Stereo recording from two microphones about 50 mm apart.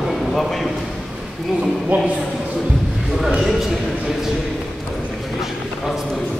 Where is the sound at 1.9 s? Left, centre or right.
Right.